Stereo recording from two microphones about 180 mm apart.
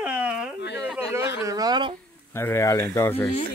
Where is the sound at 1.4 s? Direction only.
20° right (ahead or behind).